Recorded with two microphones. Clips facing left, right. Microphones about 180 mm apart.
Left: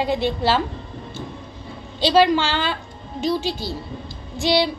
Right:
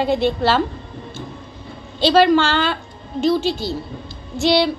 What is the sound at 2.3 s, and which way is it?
Speech, 10° left (ahead or behind).